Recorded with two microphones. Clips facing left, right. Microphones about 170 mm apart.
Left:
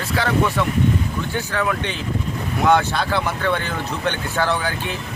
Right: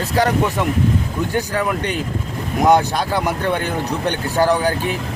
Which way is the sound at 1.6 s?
15° right (ahead or behind).